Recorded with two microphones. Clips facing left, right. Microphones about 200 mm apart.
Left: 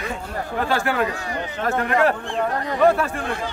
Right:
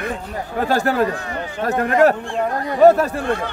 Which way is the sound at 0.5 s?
40° right (ahead or behind).